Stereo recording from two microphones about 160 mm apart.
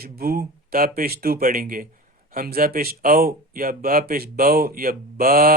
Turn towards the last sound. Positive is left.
turn(degrees=-70)  # may be behind; listen again after turning